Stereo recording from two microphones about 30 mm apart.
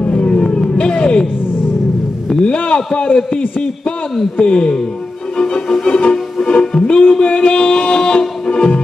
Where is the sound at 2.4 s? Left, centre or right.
Left.